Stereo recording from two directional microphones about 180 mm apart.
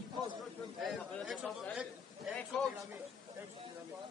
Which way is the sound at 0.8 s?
Centre (ahead or behind).